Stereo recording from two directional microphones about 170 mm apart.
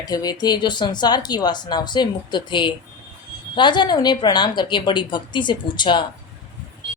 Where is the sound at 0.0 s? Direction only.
25° left (ahead or behind).